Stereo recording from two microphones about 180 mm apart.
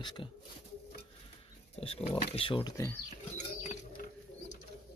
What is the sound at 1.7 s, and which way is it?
Speech, 35° left (ahead or behind).